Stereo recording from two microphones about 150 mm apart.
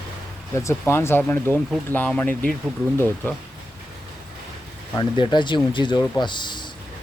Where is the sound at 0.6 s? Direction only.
15° left (ahead or behind).